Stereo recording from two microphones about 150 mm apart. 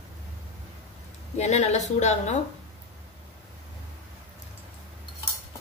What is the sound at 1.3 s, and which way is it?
A woman's voice, 50° left (ahead or behind).